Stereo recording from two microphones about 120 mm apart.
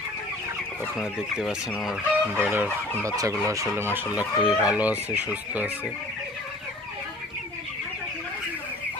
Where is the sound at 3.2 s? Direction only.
25° right (ahead or behind).